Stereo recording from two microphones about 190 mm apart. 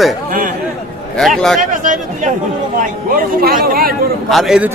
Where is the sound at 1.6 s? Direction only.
40° right (ahead or behind).